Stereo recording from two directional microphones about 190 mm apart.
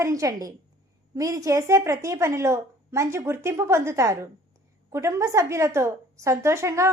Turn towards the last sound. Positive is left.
turn(degrees=-15)  # may be behind; listen again after turning